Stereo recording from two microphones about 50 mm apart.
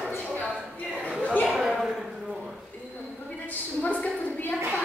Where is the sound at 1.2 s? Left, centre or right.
Left.